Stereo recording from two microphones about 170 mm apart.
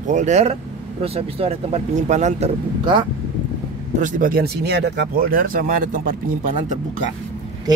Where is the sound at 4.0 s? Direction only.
50° right (ahead or behind).